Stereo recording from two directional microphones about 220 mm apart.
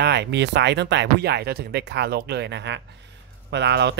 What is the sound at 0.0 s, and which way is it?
Speech, 50° right (ahead or behind).